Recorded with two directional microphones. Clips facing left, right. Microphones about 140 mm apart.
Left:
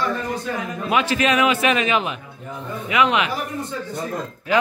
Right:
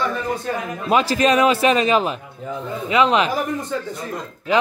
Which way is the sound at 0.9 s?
35° right (ahead or behind).